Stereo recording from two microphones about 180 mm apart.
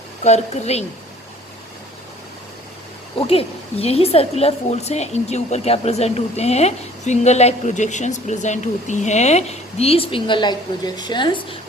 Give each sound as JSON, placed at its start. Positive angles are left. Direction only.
{"t": 0.3, "sound": "a woman's voice", "side_deg": 40}
{"t": 3.2, "sound": "a woman's voice", "side_deg": 35}